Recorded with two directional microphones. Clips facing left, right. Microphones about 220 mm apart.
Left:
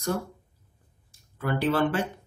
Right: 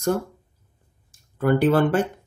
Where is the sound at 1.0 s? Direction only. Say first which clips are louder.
Right 9 dB; 50° right (ahead or behind).